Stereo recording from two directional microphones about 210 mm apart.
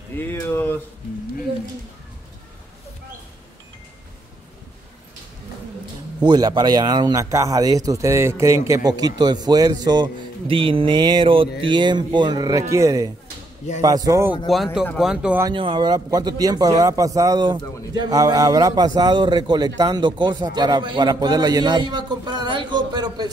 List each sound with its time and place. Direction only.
0.2 s speech: 10° left (ahead or behind)
6.1 s a man's voice: 20° right (ahead or behind)
14.5 s speech: centre (ahead or behind)
15.4 s a man's voice: 25° right (ahead or behind)